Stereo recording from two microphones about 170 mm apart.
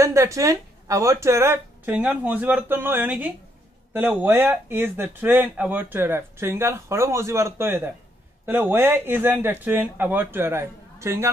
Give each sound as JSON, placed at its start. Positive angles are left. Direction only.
{"t": 0.0, "sound": "speech", "side_deg": -20}
{"t": 1.9, "sound": "speech", "side_deg": -5}